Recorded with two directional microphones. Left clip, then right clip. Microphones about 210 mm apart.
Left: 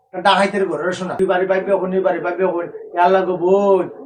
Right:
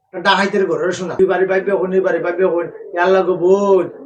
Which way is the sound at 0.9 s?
15° left (ahead or behind).